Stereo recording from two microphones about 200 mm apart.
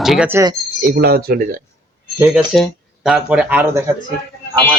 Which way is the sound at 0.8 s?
50° right (ahead or behind).